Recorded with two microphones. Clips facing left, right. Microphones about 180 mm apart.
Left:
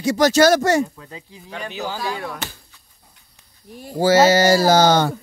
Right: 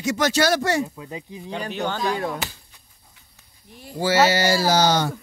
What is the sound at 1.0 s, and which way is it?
Speech, 20° right (ahead or behind).